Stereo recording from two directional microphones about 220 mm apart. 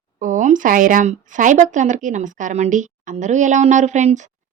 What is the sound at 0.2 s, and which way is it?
Speech, 35° right (ahead or behind).